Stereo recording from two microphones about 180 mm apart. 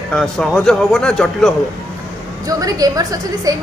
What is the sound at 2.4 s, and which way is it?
A woman's voice, 20° right (ahead or behind).